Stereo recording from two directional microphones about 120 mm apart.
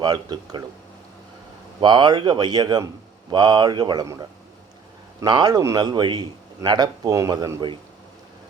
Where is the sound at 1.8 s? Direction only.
40° right (ahead or behind).